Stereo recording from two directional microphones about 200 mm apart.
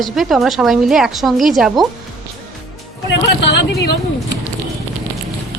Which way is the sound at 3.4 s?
60° left (ahead or behind).